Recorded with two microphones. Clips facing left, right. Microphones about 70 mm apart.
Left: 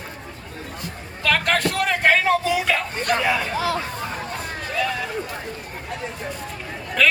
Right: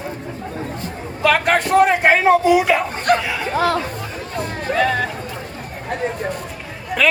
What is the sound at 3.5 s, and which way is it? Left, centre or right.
Speech, right.